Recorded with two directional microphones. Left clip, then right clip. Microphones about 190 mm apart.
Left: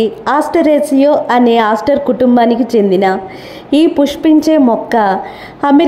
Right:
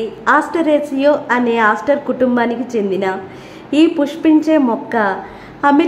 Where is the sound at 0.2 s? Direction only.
25° left (ahead or behind).